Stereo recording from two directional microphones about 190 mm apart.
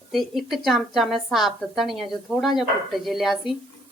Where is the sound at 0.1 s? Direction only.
Centre (ahead or behind).